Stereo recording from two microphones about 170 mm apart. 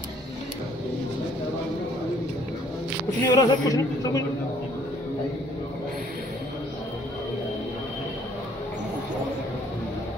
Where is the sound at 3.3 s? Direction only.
20° left (ahead or behind).